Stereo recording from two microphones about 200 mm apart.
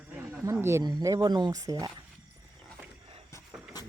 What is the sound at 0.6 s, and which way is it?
Speech, 15° right (ahead or behind).